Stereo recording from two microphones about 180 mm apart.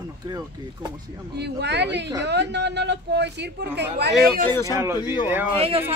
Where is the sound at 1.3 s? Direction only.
70° right (ahead or behind).